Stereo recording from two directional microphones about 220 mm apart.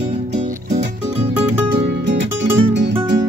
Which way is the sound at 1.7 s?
50° right (ahead or behind).